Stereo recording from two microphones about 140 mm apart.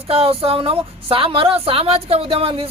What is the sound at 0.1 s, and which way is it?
A woman's voice, 45° right (ahead or behind).